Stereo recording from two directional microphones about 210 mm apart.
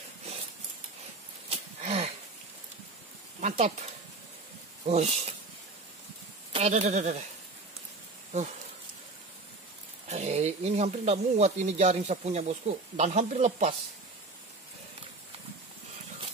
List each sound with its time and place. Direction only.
1.5 s a sound: 30° right (ahead or behind)
3.3 s speech: 35° right (ahead or behind)
4.8 s speech: 30° right (ahead or behind)
6.5 s speech: 30° right (ahead or behind)
8.3 s speech: 30° right (ahead or behind)
10.0 s speech: 30° right (ahead or behind)